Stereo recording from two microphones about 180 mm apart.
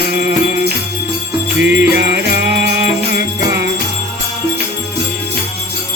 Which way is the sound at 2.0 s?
65° right (ahead or behind).